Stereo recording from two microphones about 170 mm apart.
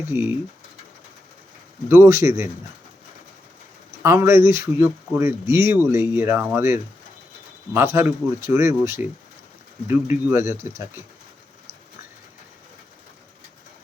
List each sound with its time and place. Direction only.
0.1 s speech: 15° right (ahead or behind)
1.9 s speech: 15° right (ahead or behind)
4.0 s speech: 15° right (ahead or behind)
7.9 s speech: 15° right (ahead or behind)